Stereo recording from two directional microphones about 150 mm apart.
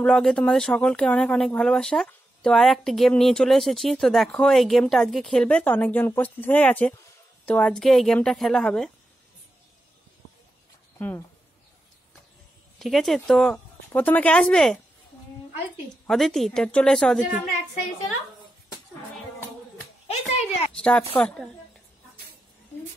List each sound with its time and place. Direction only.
0.0 s speech: 5° left (ahead or behind)
11.0 s speech: 10° left (ahead or behind)
12.7 s speech: centre (ahead or behind)
16.1 s speech: centre (ahead or behind)
20.1 s a sound: 45° left (ahead or behind)
20.7 s speech: 5° left (ahead or behind)